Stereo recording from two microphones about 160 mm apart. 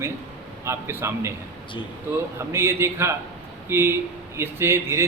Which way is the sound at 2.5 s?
15° right (ahead or behind).